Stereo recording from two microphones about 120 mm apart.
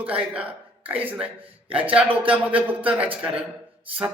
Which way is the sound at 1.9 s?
10° right (ahead or behind).